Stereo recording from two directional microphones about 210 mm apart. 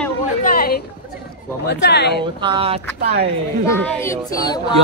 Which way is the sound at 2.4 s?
25° right (ahead or behind).